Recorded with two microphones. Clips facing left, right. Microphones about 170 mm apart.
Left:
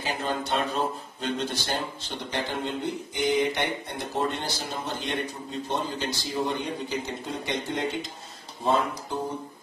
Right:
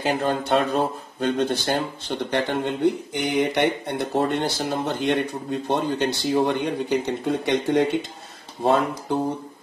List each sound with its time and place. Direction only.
0.0 s speech: 55° right (ahead or behind); by 8.0 s 70° right (ahead or behind)